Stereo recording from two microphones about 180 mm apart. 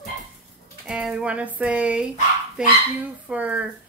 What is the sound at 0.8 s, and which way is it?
Speech, 5° right (ahead or behind).